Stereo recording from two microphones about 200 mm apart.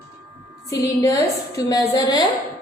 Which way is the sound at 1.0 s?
20° left (ahead or behind).